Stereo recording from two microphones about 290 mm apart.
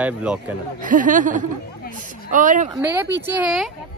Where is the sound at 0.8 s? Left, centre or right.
Right.